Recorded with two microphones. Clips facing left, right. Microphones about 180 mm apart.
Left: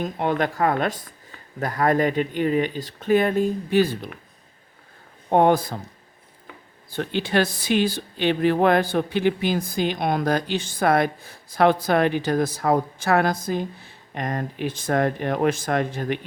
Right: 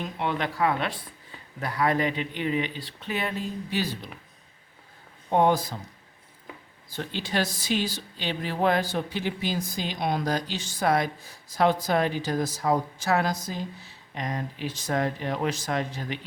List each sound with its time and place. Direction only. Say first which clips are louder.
0.0 s speech: left 6 dB; 45° left (ahead or behind)
5.3 s speech: left 4 dB; 55° left (ahead or behind)
6.9 s speech: left 7 dB; 60° left (ahead or behind)